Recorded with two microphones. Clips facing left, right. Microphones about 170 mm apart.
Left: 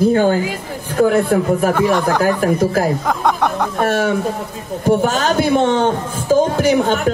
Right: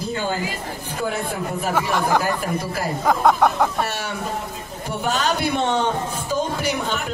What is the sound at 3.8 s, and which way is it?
A man's voice, 50° left (ahead or behind).